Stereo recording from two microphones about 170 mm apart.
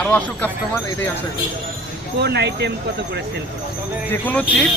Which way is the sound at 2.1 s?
80° right.